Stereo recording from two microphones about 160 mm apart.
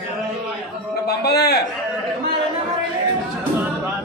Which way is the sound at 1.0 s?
90° left.